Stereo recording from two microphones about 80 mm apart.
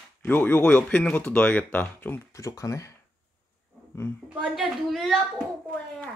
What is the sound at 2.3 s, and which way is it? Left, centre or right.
Speech, left.